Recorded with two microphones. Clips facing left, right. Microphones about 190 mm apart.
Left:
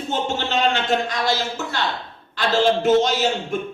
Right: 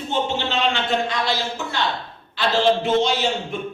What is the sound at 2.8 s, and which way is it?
Speech, 45° left (ahead or behind).